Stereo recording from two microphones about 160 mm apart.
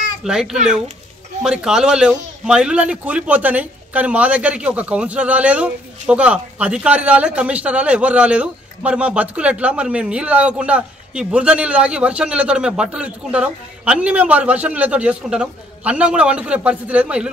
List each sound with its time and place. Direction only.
0.2 s a child's voice: 5° right (ahead or behind)